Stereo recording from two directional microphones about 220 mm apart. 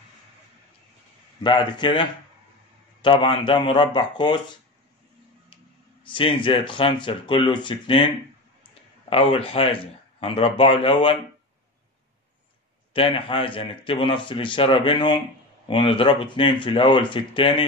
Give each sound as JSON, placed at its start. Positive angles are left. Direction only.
{"t": 1.4, "sound": "a man's voice", "side_deg": 20}
{"t": 6.0, "sound": "a man's voice", "side_deg": 25}
{"t": 9.1, "sound": "a man's voice", "side_deg": 25}
{"t": 12.9, "sound": "a man's voice", "side_deg": 25}